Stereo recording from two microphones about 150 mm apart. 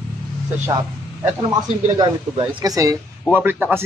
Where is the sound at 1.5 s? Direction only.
30° right (ahead or behind).